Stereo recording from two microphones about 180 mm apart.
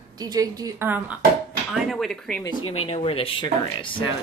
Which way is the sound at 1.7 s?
Centre (ahead or behind).